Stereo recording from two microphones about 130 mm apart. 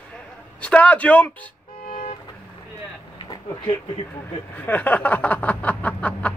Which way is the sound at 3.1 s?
35° left (ahead or behind).